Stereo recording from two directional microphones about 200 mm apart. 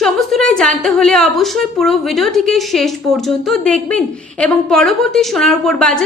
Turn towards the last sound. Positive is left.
turn(degrees=5)  # may be behind; listen again after turning